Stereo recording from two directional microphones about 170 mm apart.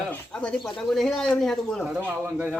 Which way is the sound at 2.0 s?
10° right (ahead or behind).